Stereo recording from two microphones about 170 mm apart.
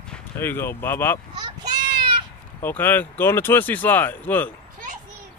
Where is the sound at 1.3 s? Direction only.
25° right (ahead or behind).